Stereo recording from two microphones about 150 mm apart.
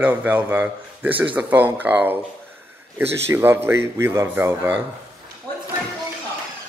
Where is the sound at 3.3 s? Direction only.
15° right (ahead or behind).